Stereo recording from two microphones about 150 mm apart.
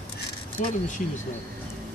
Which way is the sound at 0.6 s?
60° left (ahead or behind).